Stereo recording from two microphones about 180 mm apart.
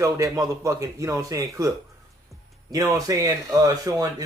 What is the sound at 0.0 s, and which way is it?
Speech, 20° right (ahead or behind).